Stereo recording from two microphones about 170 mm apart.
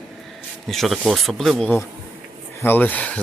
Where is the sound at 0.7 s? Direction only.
Centre (ahead or behind).